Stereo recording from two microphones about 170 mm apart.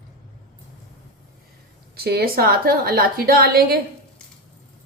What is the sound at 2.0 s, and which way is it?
A woman's voice, 65° right (ahead or behind).